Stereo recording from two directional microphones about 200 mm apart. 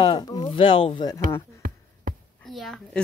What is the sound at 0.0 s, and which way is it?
Speech, 20° left (ahead or behind).